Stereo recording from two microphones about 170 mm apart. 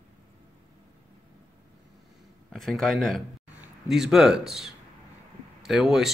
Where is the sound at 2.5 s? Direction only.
Centre (ahead or behind).